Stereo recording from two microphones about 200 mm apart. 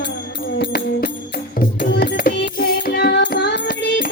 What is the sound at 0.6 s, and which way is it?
Music, 55° left (ahead or behind).